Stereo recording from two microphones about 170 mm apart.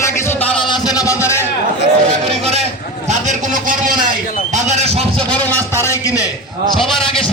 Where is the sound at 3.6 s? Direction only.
55° right (ahead or behind).